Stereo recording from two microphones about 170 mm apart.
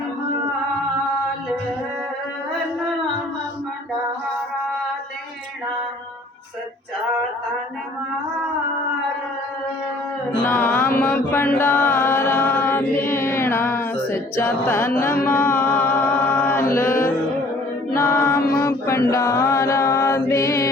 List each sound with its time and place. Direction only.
10.4 s mantra: 10° left (ahead or behind)
13.1 s music: 15° left (ahead or behind)
15.3 s chant: 15° left (ahead or behind)
16.7 s music: 15° left (ahead or behind)
17.9 s choir: 15° left (ahead or behind)
18.6 s chant: 15° left (ahead or behind)